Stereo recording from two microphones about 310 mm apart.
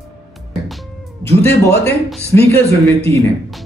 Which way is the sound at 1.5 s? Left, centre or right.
Left.